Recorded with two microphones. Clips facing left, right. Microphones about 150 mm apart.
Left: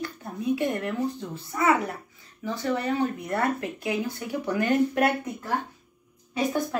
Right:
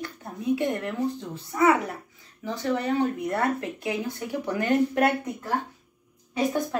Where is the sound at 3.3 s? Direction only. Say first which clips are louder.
Even; 20° right (ahead or behind).